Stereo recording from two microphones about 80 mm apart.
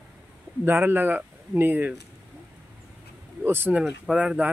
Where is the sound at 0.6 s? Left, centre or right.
Right.